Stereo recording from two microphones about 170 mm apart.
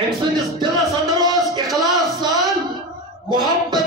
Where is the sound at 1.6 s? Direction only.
Centre (ahead or behind).